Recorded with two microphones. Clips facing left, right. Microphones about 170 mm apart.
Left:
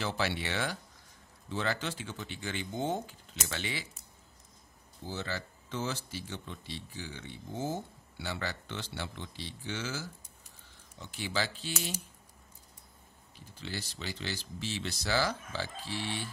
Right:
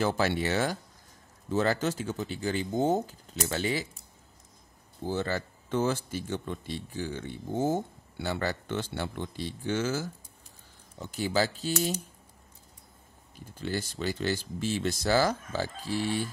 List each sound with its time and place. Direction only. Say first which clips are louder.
0.0 s speech: right 7 dB; 50° right (ahead or behind)
5.0 s speech: right 8 dB; 50° right (ahead or behind)
13.6 s speech: right 8 dB; 50° right (ahead or behind)